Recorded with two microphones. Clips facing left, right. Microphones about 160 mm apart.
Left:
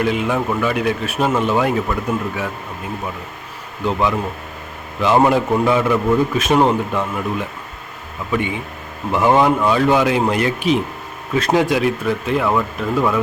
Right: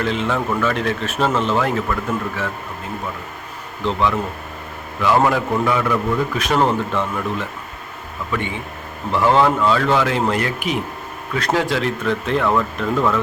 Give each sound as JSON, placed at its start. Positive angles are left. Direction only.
{"t": 0.0, "sound": "speech", "side_deg": 10}
{"t": 4.9, "sound": "a man's voice", "side_deg": 20}
{"t": 9.1, "sound": "speech", "side_deg": 15}